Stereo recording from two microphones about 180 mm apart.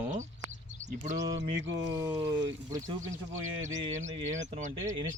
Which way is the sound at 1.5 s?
90° right.